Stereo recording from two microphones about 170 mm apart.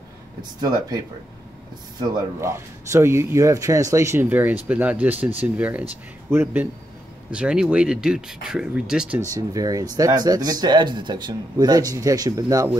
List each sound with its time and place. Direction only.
0.4 s speech: 25° right (ahead or behind); by 9.2 s 5° right (ahead or behind)
9.2 s speech: 20° right (ahead or behind)